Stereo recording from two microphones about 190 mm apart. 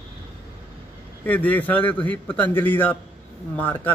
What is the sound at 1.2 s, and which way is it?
A man's voice, 10° left (ahead or behind).